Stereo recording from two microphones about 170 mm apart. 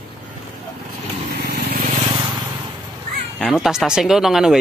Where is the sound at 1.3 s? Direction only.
60° right (ahead or behind).